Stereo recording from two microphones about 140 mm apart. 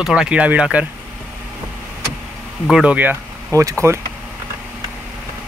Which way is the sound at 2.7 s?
10° right (ahead or behind).